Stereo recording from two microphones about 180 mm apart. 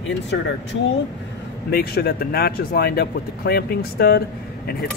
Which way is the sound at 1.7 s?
60° left (ahead or behind).